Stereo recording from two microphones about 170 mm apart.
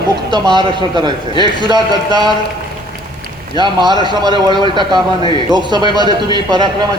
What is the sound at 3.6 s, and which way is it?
A man's voice, 25° right (ahead or behind).